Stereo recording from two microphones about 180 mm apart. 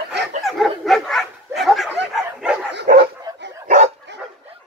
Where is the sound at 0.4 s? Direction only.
Centre (ahead or behind).